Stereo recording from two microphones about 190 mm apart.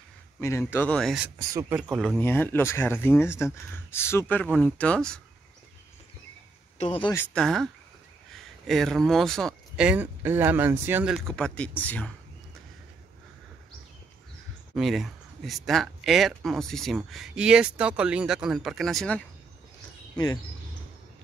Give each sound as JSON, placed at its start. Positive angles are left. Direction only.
{"t": 0.4, "sound": "speech", "side_deg": 15}
{"t": 1.5, "sound": "speech", "side_deg": -15}
{"t": 1.8, "sound": "speech", "side_deg": 0}
{"t": 6.8, "sound": "speech", "side_deg": 30}
{"t": 7.2, "sound": "speech", "side_deg": 5}
{"t": 14.8, "sound": "speech", "side_deg": 0}